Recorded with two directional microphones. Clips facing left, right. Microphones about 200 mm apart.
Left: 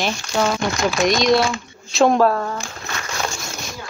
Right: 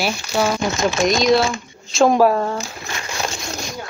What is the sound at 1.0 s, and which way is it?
Speech, centre (ahead or behind).